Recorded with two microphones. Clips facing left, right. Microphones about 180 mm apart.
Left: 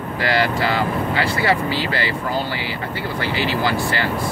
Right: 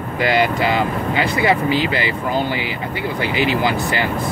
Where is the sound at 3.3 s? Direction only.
15° right (ahead or behind).